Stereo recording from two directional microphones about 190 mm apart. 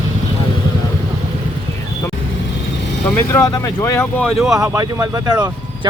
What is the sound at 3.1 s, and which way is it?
Speech, 15° left (ahead or behind).